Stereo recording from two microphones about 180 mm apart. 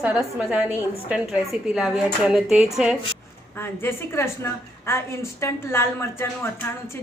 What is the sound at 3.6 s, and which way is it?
A woman's voice, 15° left (ahead or behind).